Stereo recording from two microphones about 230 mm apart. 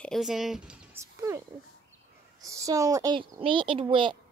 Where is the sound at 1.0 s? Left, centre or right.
Centre.